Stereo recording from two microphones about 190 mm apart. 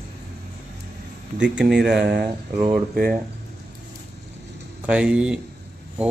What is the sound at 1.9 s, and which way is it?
Speech, 60° right (ahead or behind).